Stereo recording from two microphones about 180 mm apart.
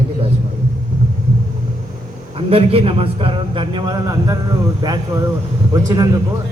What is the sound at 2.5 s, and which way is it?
A man's voice, 30° right (ahead or behind).